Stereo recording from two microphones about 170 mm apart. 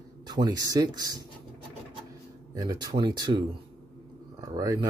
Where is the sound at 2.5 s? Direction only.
20° right (ahead or behind).